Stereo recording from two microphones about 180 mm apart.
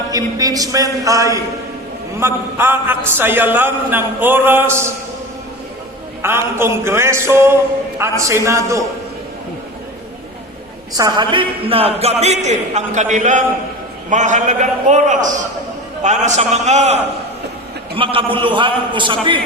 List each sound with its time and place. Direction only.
0.1 s a man's voice: 20° right (ahead or behind)
6.2 s a man's voice: 15° right (ahead or behind)
10.9 s a man's voice: 20° right (ahead or behind)